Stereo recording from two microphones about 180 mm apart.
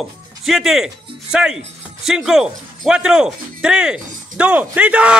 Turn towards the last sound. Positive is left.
turn(degrees=-5)  # may be behind; listen again after turning